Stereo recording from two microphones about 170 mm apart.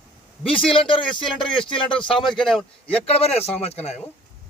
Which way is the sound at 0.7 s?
30° left (ahead or behind).